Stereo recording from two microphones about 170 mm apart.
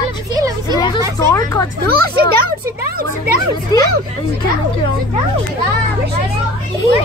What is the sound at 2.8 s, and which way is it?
Speech, 60° right (ahead or behind).